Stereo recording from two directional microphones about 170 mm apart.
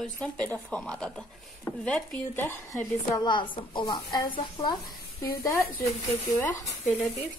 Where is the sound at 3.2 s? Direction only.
25° left (ahead or behind).